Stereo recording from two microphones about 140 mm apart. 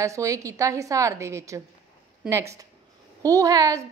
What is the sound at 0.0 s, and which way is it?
A woman's voice, 20° right (ahead or behind).